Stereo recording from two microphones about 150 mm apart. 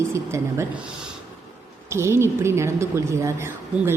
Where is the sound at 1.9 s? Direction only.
15° right (ahead or behind).